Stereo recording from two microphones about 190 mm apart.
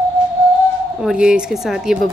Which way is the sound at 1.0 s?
5° right (ahead or behind).